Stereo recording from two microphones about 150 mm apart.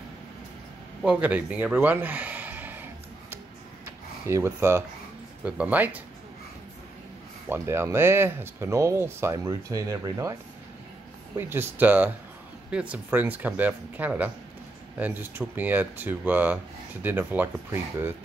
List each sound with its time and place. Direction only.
1.0 s gasp: 10° right (ahead or behind)
4.3 s speech: 15° right (ahead or behind)
7.4 s speech: 15° right (ahead or behind)
11.3 s speech: 15° right (ahead or behind)